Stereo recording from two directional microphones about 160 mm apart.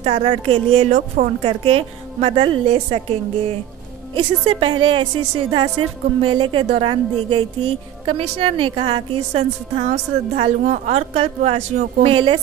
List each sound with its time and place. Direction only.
0.0 s a woman's voice: 35° right (ahead or behind)
4.1 s a woman's voice: 35° right (ahead or behind)